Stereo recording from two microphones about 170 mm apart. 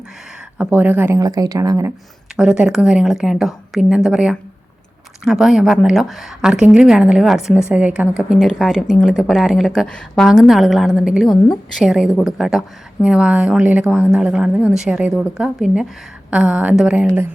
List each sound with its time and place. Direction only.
0.6 s a woman's voice: 10° right (ahead or behind)
1.2 s speech: 20° right (ahead or behind)
2.3 s a woman's voice: 5° right (ahead or behind)